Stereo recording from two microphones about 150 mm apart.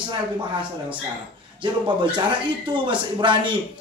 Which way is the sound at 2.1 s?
30° right (ahead or behind).